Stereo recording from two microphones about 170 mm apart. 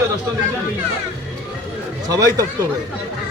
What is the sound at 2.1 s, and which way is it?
Speech, 20° right (ahead or behind).